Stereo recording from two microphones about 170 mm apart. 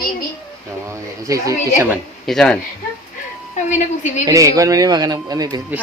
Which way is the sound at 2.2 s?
Centre (ahead or behind).